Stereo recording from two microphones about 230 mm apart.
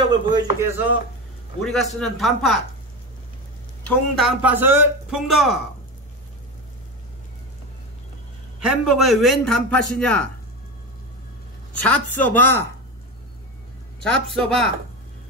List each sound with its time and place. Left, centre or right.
0.0 s speech: right
1.6 s a man's voice: centre
3.8 s a man's voice: centre
8.5 s a man's voice: centre
11.7 s a woman's voice: centre
14.0 s a man's voice: centre